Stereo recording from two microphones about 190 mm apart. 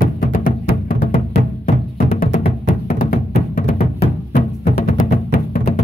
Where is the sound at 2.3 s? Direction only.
30° left (ahead or behind).